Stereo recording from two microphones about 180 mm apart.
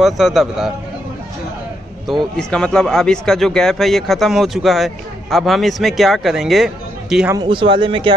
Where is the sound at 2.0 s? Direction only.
Centre (ahead or behind).